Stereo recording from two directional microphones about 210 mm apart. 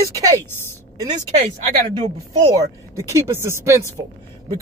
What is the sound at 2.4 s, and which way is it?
Speech, 15° right (ahead or behind).